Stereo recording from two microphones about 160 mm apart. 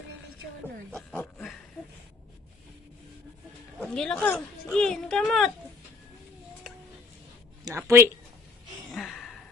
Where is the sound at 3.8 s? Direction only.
5° left (ahead or behind).